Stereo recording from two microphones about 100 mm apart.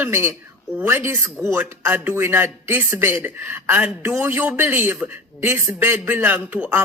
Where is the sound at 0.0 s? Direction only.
25° right (ahead or behind).